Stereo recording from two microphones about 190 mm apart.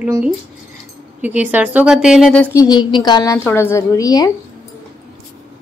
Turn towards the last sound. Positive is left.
turn(degrees=15)  # may be behind; listen again after turning